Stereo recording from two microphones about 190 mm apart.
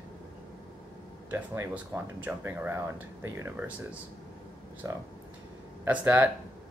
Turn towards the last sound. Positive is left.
turn(degrees=-10)  # may be behind; listen again after turning